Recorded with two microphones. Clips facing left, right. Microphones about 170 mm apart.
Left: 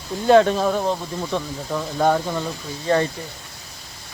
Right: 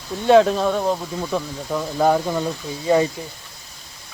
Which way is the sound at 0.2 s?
Centre (ahead or behind).